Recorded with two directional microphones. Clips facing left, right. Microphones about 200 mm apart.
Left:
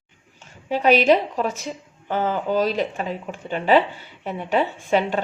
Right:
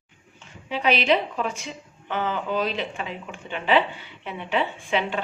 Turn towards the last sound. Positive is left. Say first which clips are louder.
# left 5 dB
turn(degrees=40)  # may be behind; listen again after turning